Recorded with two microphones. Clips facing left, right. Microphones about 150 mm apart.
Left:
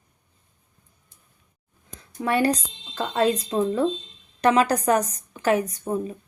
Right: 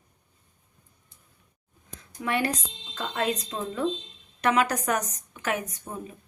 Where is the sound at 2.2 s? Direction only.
35° left (ahead or behind).